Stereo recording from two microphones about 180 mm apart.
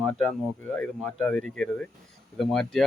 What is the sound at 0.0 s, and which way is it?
Speech, 5° left (ahead or behind).